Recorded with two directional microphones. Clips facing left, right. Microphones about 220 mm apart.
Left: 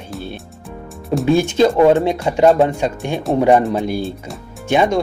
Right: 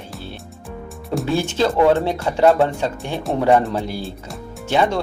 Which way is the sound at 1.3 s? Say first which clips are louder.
Left 6 dB; 15° left (ahead or behind).